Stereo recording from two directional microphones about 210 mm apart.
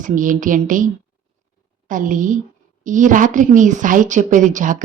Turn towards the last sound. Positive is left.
turn(degrees=-40)  # may be behind; listen again after turning